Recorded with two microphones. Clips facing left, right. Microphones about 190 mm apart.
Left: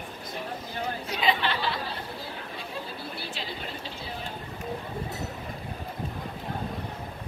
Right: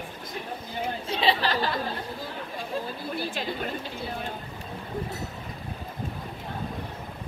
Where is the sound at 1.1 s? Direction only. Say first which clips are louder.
Right 2 dB; 30° right (ahead or behind).